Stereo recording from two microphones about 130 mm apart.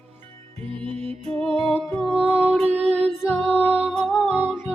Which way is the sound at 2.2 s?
50° right (ahead or behind).